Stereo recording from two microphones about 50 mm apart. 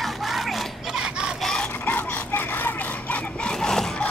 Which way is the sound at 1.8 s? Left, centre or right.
Left.